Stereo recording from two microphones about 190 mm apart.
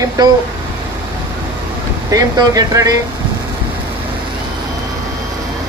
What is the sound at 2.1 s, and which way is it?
Speech, 20° right (ahead or behind).